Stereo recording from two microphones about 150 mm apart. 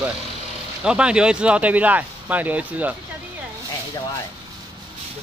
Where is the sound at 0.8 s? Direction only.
5° right (ahead or behind).